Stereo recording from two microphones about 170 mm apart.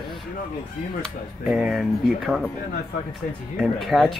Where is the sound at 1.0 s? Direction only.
Centre (ahead or behind).